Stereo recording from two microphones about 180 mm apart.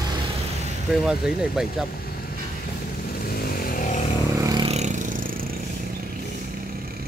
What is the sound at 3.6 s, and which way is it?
Vehicle, 50° left (ahead or behind).